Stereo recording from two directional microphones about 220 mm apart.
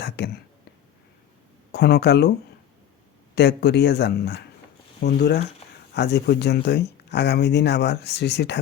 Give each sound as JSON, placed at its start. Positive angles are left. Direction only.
{"t": 0.2, "sound": "a sound", "side_deg": 50}
{"t": 1.7, "sound": "speech", "side_deg": 50}
{"t": 3.3, "sound": "speech", "side_deg": 50}